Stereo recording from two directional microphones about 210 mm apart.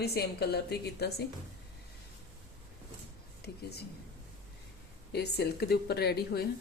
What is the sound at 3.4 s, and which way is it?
Speech, 50° left (ahead or behind).